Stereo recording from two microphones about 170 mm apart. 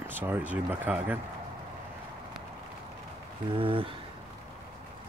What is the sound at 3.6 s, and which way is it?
Speech, 30° right (ahead or behind).